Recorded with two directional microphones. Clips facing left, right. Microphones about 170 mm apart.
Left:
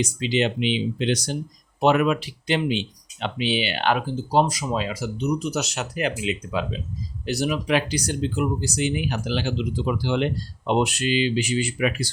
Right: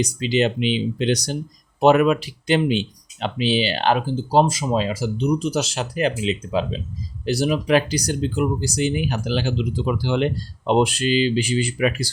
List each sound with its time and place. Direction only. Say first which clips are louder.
0.0 s speech: right 3 dB; 40° right (ahead or behind)